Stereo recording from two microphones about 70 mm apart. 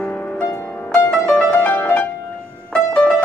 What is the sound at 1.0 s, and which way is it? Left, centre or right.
Music, left.